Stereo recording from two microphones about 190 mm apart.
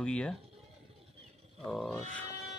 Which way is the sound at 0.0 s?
5° left (ahead or behind).